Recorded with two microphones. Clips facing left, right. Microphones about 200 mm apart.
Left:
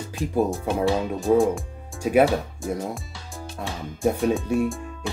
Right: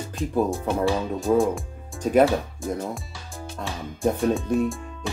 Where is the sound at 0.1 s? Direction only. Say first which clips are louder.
Left 1 dB; centre (ahead or behind).